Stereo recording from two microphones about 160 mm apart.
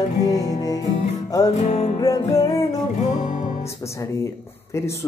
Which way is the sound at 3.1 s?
50° left (ahead or behind).